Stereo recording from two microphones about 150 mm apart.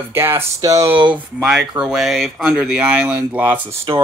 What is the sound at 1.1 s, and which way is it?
Speech, 5° right (ahead or behind).